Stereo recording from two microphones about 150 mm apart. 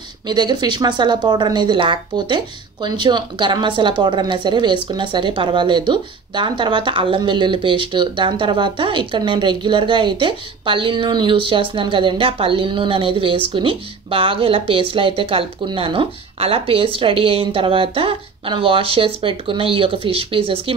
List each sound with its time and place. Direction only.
0.3 s speech: 30° right (ahead or behind)